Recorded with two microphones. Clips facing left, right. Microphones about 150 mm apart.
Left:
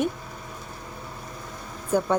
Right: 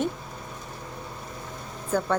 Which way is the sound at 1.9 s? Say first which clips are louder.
Left 3 dB; 10° left (ahead or behind).